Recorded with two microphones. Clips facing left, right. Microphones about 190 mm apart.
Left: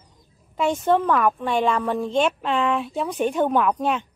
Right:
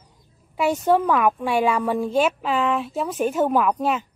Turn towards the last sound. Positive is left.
turn(degrees=-5)  # may be behind; listen again after turning